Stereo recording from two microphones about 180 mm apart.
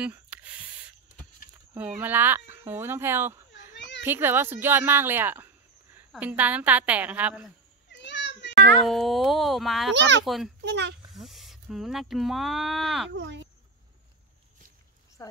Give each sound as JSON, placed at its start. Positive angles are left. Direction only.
{"t": 0.0, "sound": "a sound", "side_deg": -5}
{"t": 1.7, "sound": "speech", "side_deg": -10}
{"t": 3.7, "sound": "children playing", "side_deg": 80}
{"t": 4.0, "sound": "a woman's voice", "side_deg": -10}
{"t": 7.9, "sound": "a sound", "side_deg": 80}
{"t": 8.8, "sound": "speech", "side_deg": 0}
{"t": 9.9, "sound": "speech", "side_deg": -80}
{"t": 10.2, "sound": "speech", "side_deg": 0}
{"t": 10.6, "sound": "a child's voice", "side_deg": -70}
{"t": 11.1, "sound": "speech", "side_deg": 0}
{"t": 13.1, "sound": "speech", "side_deg": -75}